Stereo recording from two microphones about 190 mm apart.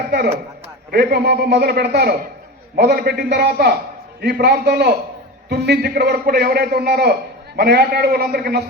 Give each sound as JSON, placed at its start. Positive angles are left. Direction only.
{"t": 0.9, "sound": "a man's voice", "side_deg": -55}